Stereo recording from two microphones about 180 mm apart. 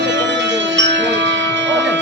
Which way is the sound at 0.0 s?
75° right (ahead or behind).